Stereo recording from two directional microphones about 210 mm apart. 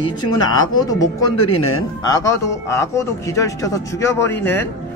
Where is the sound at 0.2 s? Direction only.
90° left.